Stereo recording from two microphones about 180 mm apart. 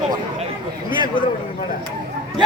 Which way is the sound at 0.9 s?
25° left (ahead or behind).